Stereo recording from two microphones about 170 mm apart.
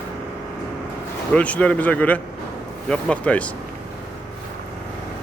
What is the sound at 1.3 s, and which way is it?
Speech, 10° left (ahead or behind).